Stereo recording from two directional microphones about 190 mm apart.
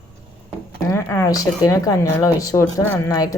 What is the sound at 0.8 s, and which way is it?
Speech, 10° left (ahead or behind).